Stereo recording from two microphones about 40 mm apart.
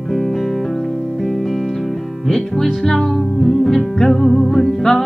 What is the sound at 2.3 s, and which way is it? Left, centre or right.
Music, centre.